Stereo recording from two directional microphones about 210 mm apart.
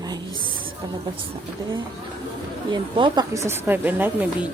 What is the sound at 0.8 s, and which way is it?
Speech, 15° right (ahead or behind).